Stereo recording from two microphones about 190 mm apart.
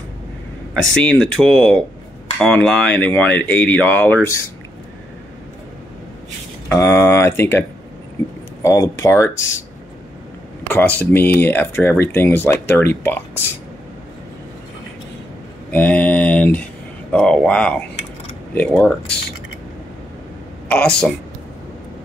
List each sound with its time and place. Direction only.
1.0 s speech: 5° left (ahead or behind)
6.7 s speech: 15° left (ahead or behind)
8.6 s speech: 15° left (ahead or behind)
10.7 s speech: 10° left (ahead or behind)
15.7 s speech: 10° left (ahead or behind)
20.6 s a woman's voice: 5° left (ahead or behind)